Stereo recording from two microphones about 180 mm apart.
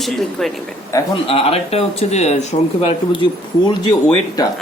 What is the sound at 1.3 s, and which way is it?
Speech, 35° left (ahead or behind).